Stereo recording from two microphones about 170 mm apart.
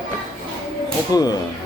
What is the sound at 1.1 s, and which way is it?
Speech, 20° left (ahead or behind).